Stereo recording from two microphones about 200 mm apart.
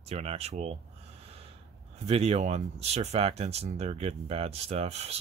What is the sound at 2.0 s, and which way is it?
Speech, 30° right (ahead or behind).